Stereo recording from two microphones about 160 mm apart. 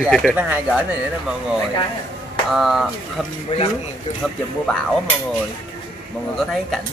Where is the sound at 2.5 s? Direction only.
Centre (ahead or behind).